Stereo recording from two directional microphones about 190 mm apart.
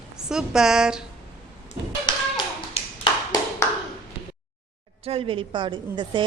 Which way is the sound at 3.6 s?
15° left (ahead or behind).